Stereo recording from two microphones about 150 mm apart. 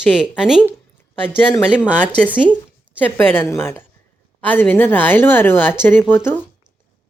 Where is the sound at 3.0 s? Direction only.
15° left (ahead or behind).